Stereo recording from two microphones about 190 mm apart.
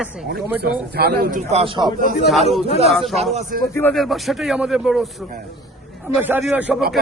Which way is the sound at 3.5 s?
50° right (ahead or behind).